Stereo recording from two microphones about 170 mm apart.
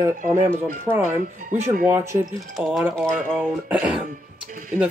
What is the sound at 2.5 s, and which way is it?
Speech, centre (ahead or behind).